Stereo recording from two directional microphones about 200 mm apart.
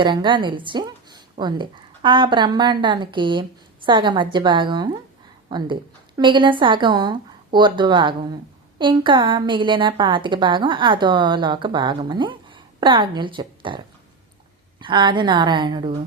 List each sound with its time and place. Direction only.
0.0 s a woman's voice: 25° right (ahead or behind)